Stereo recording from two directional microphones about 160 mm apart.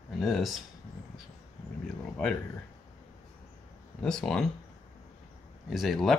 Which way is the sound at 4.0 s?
5° left (ahead or behind).